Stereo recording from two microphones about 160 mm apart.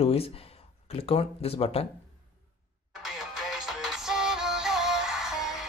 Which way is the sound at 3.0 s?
Centre (ahead or behind).